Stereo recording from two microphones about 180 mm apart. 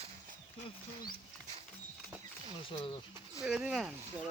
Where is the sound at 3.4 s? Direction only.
5° right (ahead or behind).